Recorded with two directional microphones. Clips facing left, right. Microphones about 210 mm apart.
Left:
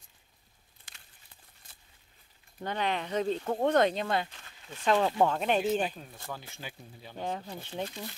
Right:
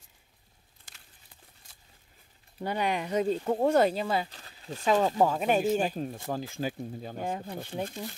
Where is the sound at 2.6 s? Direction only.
10° right (ahead or behind).